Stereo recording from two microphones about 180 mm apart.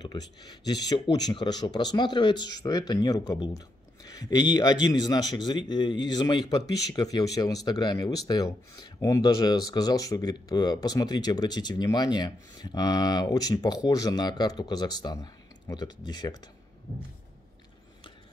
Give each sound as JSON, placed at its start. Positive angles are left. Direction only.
{"t": 0.0, "sound": "speech", "side_deg": 25}